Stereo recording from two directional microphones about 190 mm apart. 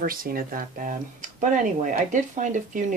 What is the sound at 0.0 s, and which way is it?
Speech, 50° right (ahead or behind).